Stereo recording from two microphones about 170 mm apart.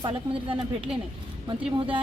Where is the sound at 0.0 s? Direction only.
30° right (ahead or behind).